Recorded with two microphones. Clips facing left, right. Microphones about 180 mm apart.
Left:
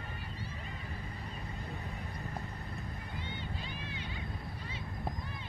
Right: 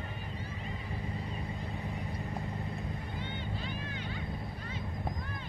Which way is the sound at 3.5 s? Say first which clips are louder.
Right 4 dB; 45° right (ahead or behind).